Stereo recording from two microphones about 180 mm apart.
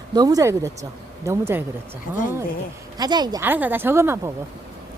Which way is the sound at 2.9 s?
20° right (ahead or behind).